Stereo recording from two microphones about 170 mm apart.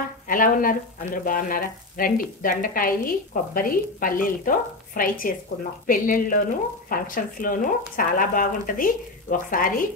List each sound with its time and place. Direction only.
0.3 s speech: 55° left (ahead or behind)